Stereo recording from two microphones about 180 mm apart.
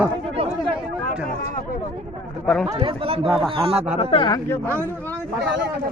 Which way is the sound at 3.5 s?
30° right (ahead or behind).